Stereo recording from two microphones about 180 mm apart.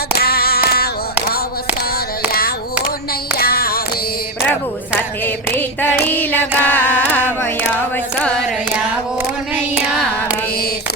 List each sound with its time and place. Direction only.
0.2 s female singing: 60° left (ahead or behind)
3.3 s music: 60° left (ahead or behind)
5.2 s a sound: 10° left (ahead or behind)